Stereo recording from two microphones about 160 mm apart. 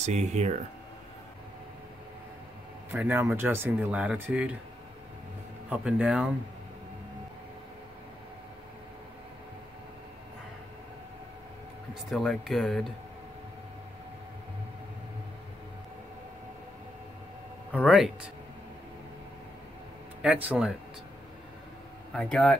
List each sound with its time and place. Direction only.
0.0 s speech: 45° right (ahead or behind)
2.9 s speech: 10° right (ahead or behind)
5.7 s speech: 5° right (ahead or behind)
11.9 s speech: centre (ahead or behind)
17.8 s speech: centre (ahead or behind)
20.4 s speech: 5° right (ahead or behind)
22.1 s speech: 5° left (ahead or behind)